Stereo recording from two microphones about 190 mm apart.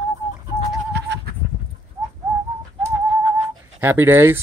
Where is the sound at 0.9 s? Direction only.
65° right (ahead or behind).